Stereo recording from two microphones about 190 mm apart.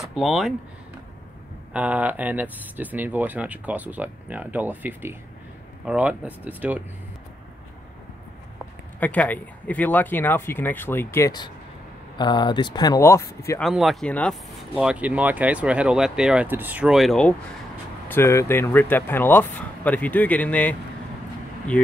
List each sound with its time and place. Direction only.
0.0 s speech: centre (ahead or behind)
1.7 s speech: 10° right (ahead or behind)
9.0 s speech: 10° left (ahead or behind)
13.6 s speech: centre (ahead or behind)
14.8 s speech: 5° right (ahead or behind)
18.0 s speech: 10° left (ahead or behind)
21.7 s speech: 5° left (ahead or behind)